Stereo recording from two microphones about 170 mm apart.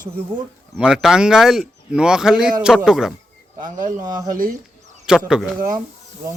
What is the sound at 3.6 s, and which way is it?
Speech, 55° right (ahead or behind).